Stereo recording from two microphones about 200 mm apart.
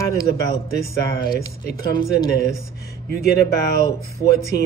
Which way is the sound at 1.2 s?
50° left (ahead or behind).